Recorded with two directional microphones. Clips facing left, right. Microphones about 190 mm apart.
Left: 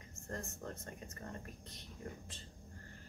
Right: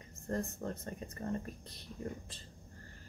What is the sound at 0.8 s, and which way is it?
Speech, 30° right (ahead or behind).